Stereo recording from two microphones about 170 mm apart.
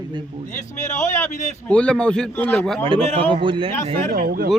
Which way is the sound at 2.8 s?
30° right (ahead or behind).